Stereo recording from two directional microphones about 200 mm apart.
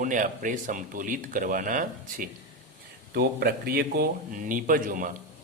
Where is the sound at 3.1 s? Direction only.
50° right (ahead or behind).